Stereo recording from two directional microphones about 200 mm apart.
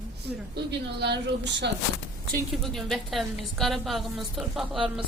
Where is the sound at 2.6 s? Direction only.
Centre (ahead or behind).